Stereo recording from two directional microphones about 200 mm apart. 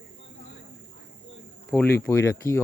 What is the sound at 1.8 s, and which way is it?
Speech, 55° left (ahead or behind).